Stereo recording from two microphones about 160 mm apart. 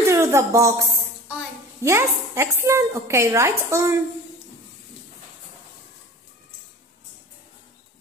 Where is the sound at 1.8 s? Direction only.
15° right (ahead or behind).